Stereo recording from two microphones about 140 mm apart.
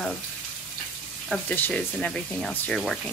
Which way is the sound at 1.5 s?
10° left (ahead or behind).